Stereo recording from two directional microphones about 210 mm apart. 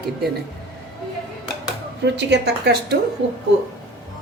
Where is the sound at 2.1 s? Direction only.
50° right (ahead or behind).